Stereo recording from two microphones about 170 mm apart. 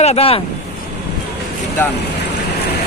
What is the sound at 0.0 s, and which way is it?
Speech, 35° left (ahead or behind).